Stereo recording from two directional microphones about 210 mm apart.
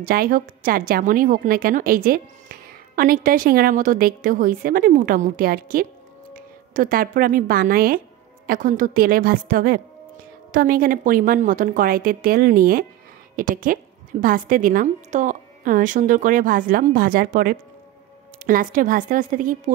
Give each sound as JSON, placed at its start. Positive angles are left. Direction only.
{"t": 0.0, "sound": "a woman's voice", "side_deg": -45}